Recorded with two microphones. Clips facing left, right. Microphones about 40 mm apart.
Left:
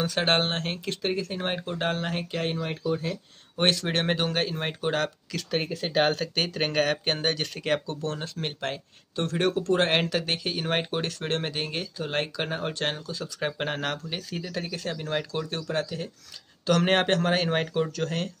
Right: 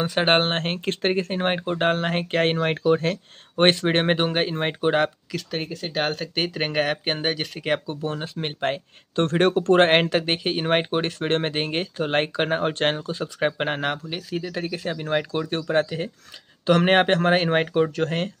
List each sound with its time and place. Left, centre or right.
0.0 s speech: right
3.5 s speech: right
5.3 s speech: centre; by 8.8 s right
9.1 s speech: right